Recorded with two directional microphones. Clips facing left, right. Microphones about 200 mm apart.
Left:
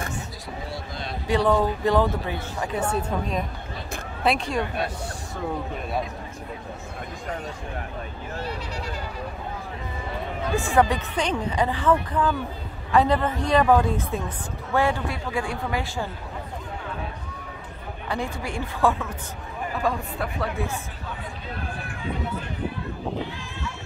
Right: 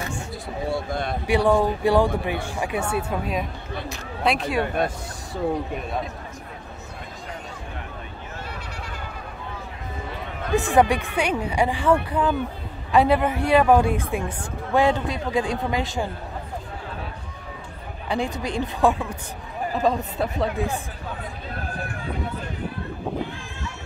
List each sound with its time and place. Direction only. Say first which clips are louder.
0.7 s a sound: right 11 dB; 55° right (ahead or behind)
1.2 s speech: right 1 dB; 10° right (ahead or behind)
10.5 s speech: right 3 dB; 15° right (ahead or behind)
18.0 s speech: right 4 dB; 15° right (ahead or behind)